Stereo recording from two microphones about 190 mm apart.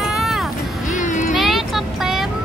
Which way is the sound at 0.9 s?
40° left (ahead or behind).